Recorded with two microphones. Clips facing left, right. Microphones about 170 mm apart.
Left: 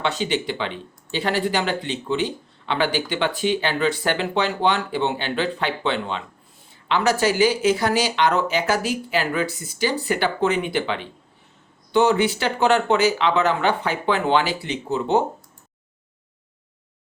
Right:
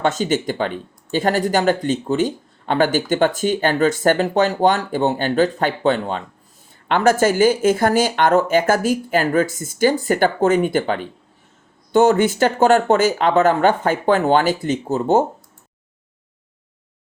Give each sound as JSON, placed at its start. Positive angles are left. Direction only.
{"t": 0.0, "sound": "speech", "side_deg": -45}